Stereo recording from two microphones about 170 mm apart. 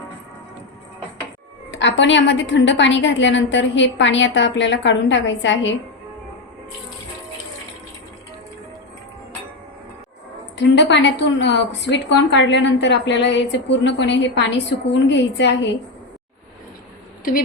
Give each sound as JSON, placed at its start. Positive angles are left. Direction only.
{"t": 1.7, "sound": "a woman's voice", "side_deg": 90}
{"t": 10.6, "sound": "a woman's voice", "side_deg": 90}